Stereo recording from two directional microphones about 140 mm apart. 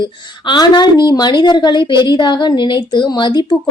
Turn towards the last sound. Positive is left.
turn(degrees=35)  # may be behind; listen again after turning